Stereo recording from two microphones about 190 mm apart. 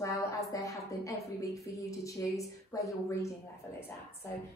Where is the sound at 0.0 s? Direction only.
15° left (ahead or behind).